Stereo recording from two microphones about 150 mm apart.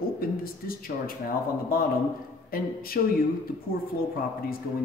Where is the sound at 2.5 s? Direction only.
75° left (ahead or behind).